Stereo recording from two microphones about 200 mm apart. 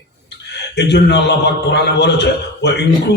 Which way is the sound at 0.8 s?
60° left (ahead or behind).